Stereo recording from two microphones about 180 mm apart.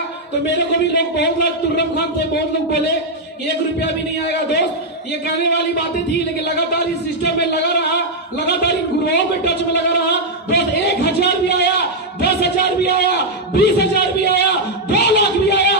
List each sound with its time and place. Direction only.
0.7 s a man's voice: 70° left (ahead or behind)
3.8 s a man's voice: 75° left (ahead or behind)
13.6 s a sound: 65° left (ahead or behind)